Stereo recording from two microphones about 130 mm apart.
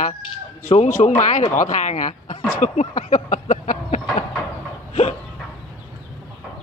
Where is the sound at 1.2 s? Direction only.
65° left (ahead or behind).